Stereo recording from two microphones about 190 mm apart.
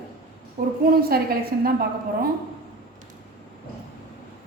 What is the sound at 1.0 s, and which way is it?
Speech, 55° right (ahead or behind).